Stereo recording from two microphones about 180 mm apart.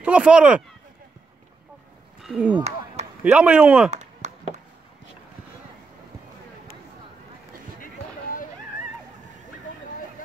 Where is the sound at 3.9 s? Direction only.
40° right (ahead or behind).